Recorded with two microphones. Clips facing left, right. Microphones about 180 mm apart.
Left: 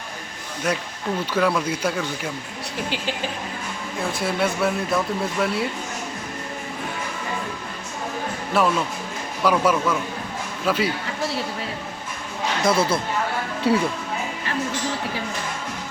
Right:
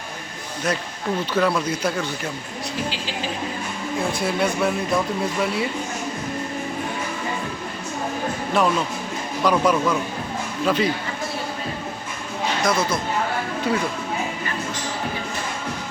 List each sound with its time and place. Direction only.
1.3 s speech: 10° left (ahead or behind)
4.2 s speech: centre (ahead or behind)
8.6 s speech: 5° left (ahead or behind)
12.6 s speech: 30° left (ahead or behind)